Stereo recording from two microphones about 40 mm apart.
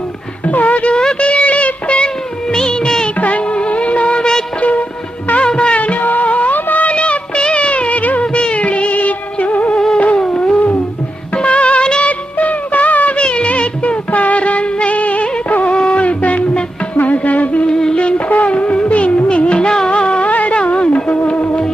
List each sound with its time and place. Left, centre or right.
0.5 s music: left
0.9 s a sound: left
2.5 s music of bollywood: centre
3.2 s music: left
5.4 s music: left
5.8 s music of bollywood: left
6.9 s music: left
8.2 s music: left
12.1 s music: left
13.2 s music: left
16.9 s music: left
17.6 s a sound: left
18.1 s music: left